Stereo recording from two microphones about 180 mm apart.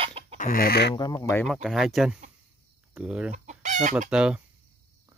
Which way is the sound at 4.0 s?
5° right (ahead or behind).